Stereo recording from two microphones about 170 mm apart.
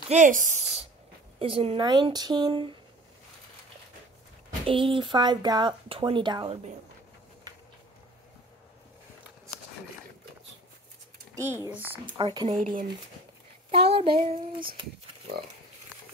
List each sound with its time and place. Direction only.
0.1 s speech: 50° right (ahead or behind)
1.4 s child singing: 35° right (ahead or behind)
1.8 s speech: 25° right (ahead or behind)
4.6 s speech: 30° right (ahead or behind)
11.3 s speech: 15° right (ahead or behind)
12.2 s speech: 25° right (ahead or behind)
13.7 s child singing: 35° right (ahead or behind)